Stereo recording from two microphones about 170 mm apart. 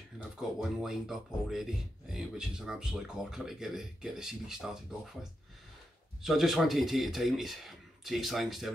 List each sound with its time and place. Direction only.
0.4 s speech: centre (ahead or behind)
6.2 s speech: centre (ahead or behind)